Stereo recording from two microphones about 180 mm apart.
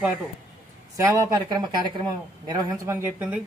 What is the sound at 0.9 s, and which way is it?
Speech, 20° right (ahead or behind).